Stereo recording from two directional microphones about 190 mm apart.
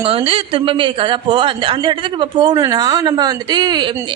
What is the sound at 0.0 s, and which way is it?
Speech, 30° right (ahead or behind).